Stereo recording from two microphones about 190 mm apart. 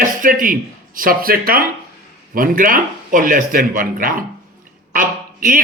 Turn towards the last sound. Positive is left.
turn(degrees=-45)  # may be behind; listen again after turning